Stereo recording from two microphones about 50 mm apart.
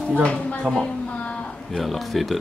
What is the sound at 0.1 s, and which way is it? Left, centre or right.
Speech, left.